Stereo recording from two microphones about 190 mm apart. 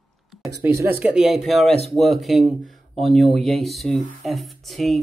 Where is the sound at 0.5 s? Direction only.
15° right (ahead or behind).